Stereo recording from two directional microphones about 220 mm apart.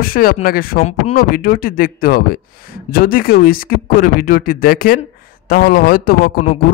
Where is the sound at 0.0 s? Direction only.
40° left (ahead or behind).